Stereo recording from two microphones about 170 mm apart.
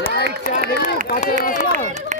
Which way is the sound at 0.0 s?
75° left (ahead or behind).